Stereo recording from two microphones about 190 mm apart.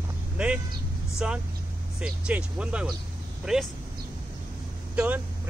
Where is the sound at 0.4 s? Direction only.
5° right (ahead or behind).